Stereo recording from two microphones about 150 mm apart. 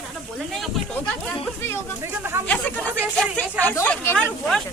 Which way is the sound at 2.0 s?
15° right (ahead or behind).